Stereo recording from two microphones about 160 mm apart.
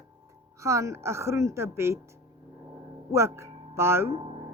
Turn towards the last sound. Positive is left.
turn(degrees=-35)  # may be behind; listen again after turning